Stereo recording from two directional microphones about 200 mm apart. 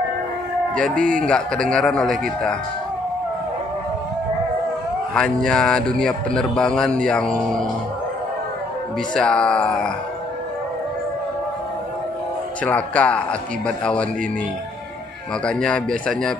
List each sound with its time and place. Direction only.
0.9 s a man's voice: 40° right (ahead or behind)
1.2 s a man's voice: 5° left (ahead or behind)
5.1 s a man's voice: 5° left (ahead or behind)
9.1 s a man's voice: 5° left (ahead or behind)
12.6 s a man's voice: 5° left (ahead or behind)
15.4 s a man's voice: 5° left (ahead or behind)